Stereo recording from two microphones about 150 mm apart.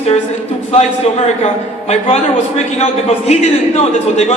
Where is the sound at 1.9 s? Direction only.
50° left (ahead or behind).